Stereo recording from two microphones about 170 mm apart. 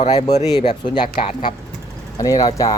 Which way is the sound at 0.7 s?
25° left (ahead or behind).